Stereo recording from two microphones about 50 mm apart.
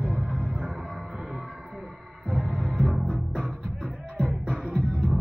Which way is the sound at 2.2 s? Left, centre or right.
Centre.